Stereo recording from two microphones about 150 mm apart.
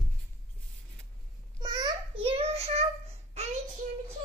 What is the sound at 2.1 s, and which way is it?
Child singing, 40° right (ahead or behind).